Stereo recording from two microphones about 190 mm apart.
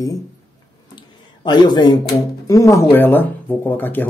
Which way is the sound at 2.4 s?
15° left (ahead or behind).